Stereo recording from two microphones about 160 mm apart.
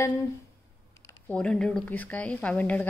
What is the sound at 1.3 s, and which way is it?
A woman's voice, 5° left (ahead or behind).